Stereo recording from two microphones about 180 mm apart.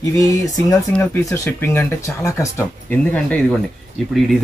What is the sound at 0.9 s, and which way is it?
Speech, 10° left (ahead or behind).